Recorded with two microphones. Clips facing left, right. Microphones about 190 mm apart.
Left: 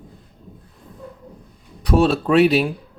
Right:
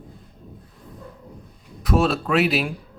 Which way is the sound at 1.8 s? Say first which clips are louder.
Left 4 dB; 35° left (ahead or behind).